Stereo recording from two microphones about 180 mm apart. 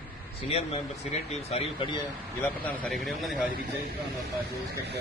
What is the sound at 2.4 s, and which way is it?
A man's voice, 10° left (ahead or behind).